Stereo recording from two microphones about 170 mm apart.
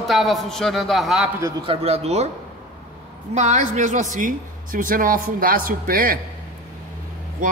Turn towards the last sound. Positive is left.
turn(degrees=-55)  # may be behind; listen again after turning